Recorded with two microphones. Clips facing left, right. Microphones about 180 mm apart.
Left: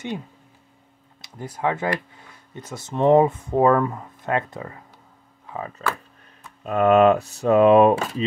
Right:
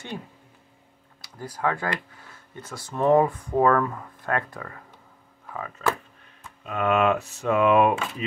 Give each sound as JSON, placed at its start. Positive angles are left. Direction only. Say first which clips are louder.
{"t": 1.2, "sound": "speech", "louder": "left 2 dB", "side_deg": 20}
{"t": 5.8, "sound": "speech", "louder": "right 6 dB", "side_deg": 35}